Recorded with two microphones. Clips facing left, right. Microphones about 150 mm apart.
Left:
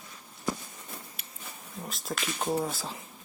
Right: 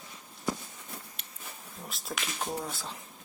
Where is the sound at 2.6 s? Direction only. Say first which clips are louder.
Left 5 dB; centre (ahead or behind).